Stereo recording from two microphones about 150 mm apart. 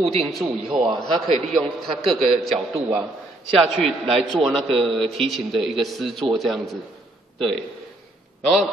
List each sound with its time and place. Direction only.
0.0 s a man's voice: 45° right (ahead or behind)
0.3 s a man's voice: centre (ahead or behind)